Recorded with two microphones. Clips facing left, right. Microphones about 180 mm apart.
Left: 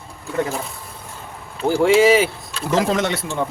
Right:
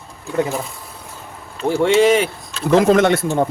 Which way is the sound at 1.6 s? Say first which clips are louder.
Even; centre (ahead or behind).